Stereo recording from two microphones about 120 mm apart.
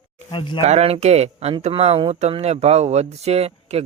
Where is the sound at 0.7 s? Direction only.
65° right (ahead or behind).